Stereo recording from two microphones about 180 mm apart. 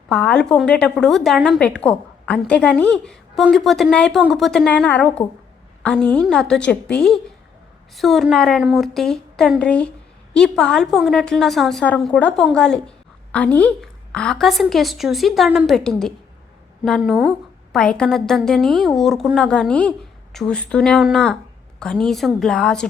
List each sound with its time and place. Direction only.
0.1 s a woman's voice: 5° left (ahead or behind)